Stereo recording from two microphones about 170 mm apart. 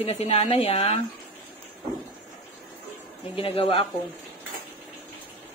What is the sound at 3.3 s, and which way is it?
Speech, 35° left (ahead or behind).